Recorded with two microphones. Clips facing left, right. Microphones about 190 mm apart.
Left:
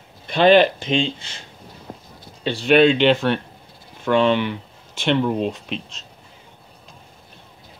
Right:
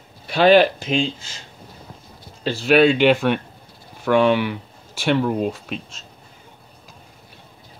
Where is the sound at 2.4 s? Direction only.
5° right (ahead or behind).